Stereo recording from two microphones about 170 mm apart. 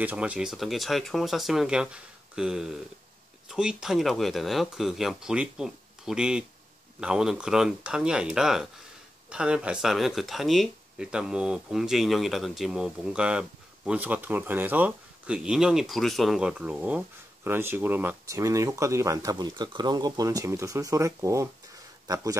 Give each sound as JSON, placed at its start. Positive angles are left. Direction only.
{"t": 0.0, "sound": "speech", "side_deg": -10}